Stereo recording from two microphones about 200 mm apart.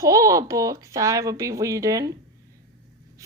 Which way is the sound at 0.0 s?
15° right (ahead or behind).